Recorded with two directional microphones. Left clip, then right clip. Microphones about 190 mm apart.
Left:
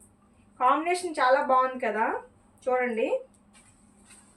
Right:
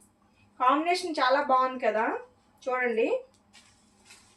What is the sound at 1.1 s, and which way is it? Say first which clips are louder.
A woman's voice: left 3 dB; 20° left (ahead or behind).